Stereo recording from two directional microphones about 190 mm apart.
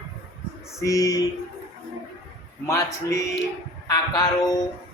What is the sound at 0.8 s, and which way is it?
Speech, 15° left (ahead or behind).